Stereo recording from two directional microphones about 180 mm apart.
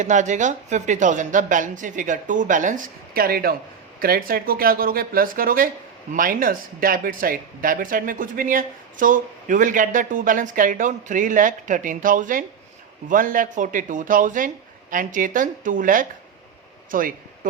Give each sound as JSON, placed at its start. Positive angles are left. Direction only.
{"t": 0.0, "sound": "speech", "side_deg": -45}